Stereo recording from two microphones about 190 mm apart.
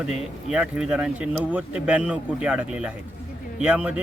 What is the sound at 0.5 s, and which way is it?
Speech, 5° right (ahead or behind).